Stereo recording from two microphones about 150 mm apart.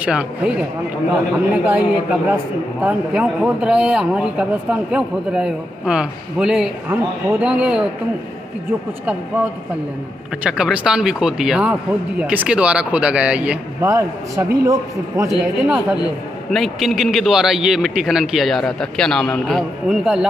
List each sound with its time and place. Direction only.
0.0 s a man's voice: 10° right (ahead or behind)
10.4 s a man's voice: 5° right (ahead or behind)
13.8 s a man's voice: 20° right (ahead or behind)
15.6 s a man's voice: 10° right (ahead or behind)